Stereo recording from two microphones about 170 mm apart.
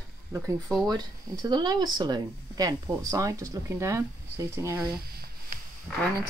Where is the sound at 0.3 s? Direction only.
20° right (ahead or behind).